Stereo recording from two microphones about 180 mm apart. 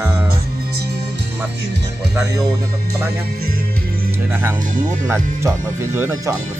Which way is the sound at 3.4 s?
55° right (ahead or behind).